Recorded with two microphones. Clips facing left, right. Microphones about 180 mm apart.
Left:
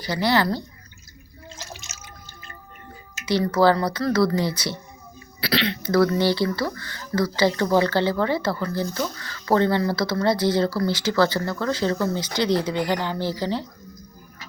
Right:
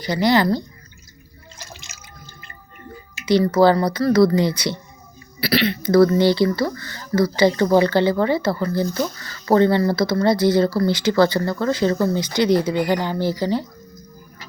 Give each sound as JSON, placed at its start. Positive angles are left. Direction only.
{"t": 0.0, "sound": "speech", "side_deg": -15}
{"t": 3.4, "sound": "speech", "side_deg": -10}
{"t": 5.4, "sound": "speech", "side_deg": -10}